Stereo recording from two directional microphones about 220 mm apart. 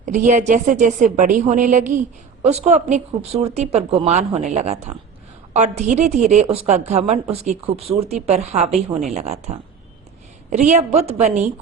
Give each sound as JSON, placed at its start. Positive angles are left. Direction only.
{"t": 0.0, "sound": "a woman's voice", "side_deg": -35}